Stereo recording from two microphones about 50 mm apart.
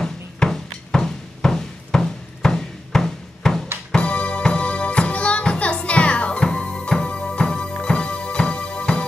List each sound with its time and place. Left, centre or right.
0.0 s drum: centre
3.9 s music: left